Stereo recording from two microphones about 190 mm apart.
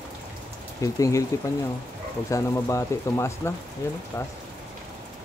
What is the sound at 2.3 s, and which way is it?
Speech, 15° left (ahead or behind).